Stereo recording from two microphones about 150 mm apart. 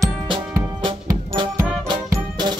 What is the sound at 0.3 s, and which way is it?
Music, 30° right (ahead or behind).